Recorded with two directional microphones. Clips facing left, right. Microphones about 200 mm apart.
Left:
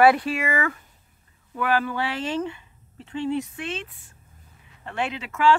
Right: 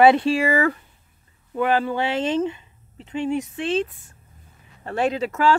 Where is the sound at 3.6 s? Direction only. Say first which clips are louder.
Right 9 dB; 30° right (ahead or behind).